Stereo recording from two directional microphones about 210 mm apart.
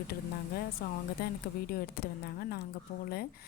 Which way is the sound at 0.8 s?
45° left (ahead or behind).